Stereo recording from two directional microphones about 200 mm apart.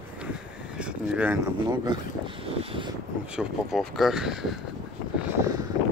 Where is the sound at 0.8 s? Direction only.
5° right (ahead or behind).